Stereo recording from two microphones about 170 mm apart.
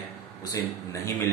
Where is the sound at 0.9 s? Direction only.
15° left (ahead or behind).